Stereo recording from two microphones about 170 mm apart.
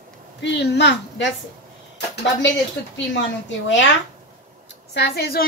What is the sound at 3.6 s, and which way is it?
Speech, 90° left.